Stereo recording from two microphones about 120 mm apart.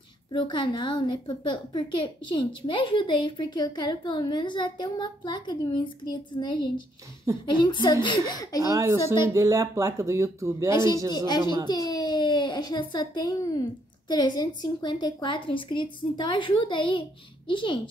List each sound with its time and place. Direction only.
0.3 s a woman's voice: 40° left (ahead or behind)
8.5 s speech: 30° right (ahead or behind)
11.1 s a woman's voice: 35° left (ahead or behind)